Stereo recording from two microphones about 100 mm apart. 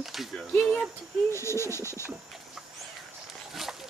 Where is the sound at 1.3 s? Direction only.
25° left (ahead or behind).